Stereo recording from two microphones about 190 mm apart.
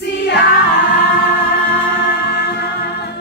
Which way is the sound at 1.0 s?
60° left (ahead or behind).